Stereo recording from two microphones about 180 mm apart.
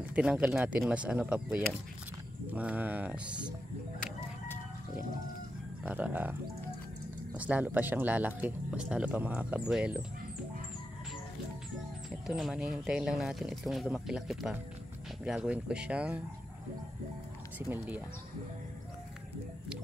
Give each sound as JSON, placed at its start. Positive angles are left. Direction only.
{"t": 0.1, "sound": "speech", "side_deg": -5}
{"t": 5.9, "sound": "speech", "side_deg": -10}
{"t": 7.3, "sound": "speech", "side_deg": -10}
{"t": 12.3, "sound": "speech", "side_deg": 0}
{"t": 17.6, "sound": "speech", "side_deg": -10}